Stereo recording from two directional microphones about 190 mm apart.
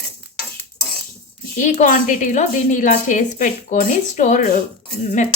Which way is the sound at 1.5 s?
40° left (ahead or behind).